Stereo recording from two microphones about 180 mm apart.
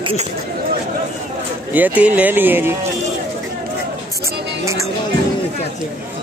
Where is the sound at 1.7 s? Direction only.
10° right (ahead or behind).